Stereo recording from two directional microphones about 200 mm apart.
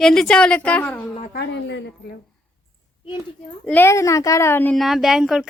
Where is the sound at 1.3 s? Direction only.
60° left (ahead or behind).